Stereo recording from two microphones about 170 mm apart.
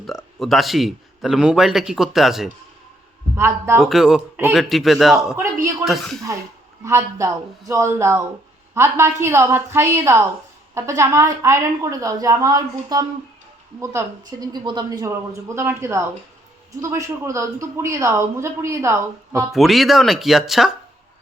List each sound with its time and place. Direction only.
0.1 s a man's voice: centre (ahead or behind)
3.3 s a man's voice: 15° right (ahead or behind)
3.8 s a man's voice: centre (ahead or behind)
6.8 s a man's voice: 15° right (ahead or behind)
19.5 s a man's voice: centre (ahead or behind)